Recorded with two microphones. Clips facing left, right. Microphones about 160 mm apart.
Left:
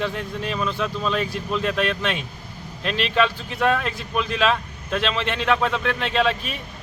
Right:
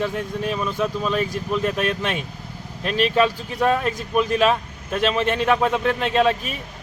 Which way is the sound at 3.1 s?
10° right (ahead or behind).